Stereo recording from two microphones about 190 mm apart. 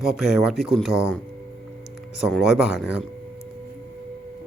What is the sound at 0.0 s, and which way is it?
Speech, centre (ahead or behind).